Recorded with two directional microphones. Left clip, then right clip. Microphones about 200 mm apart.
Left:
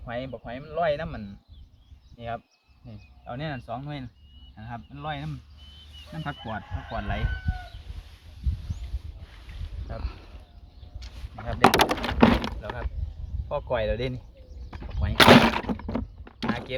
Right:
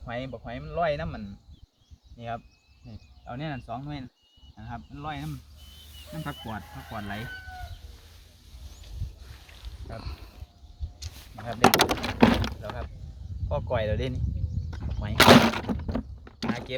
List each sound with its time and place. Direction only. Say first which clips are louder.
0.0 s speech: left 1 dB; 5° right (ahead or behind)
2.1 s speech: left 1 dB; 20° left (ahead or behind)
2.8 s speech: left 2 dB; 40° left (ahead or behind)
10.0 s speech: even; 5° right (ahead or behind)
11.0 s a sound: right 4 dB; 35° right (ahead or behind)
11.3 s speech: left 1 dB; 10° right (ahead or behind)
14.7 s thunk: left 2 dB; 5° right (ahead or behind)